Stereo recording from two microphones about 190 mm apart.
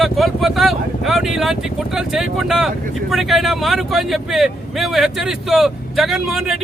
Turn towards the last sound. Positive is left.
turn(degrees=0)  # may be behind; listen again after turning